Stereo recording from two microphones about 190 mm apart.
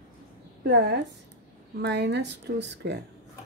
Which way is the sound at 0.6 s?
60° right (ahead or behind).